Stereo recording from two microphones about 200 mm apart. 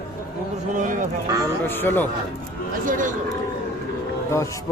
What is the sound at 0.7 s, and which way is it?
Speech, 40° right (ahead or behind).